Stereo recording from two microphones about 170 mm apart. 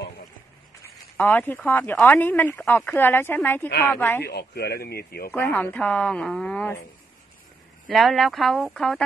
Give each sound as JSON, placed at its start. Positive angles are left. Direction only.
{"t": 1.1, "sound": "speech", "side_deg": 10}
{"t": 4.2, "sound": "speech", "side_deg": 70}
{"t": 5.3, "sound": "speech", "side_deg": 10}
{"t": 7.9, "sound": "speech", "side_deg": 0}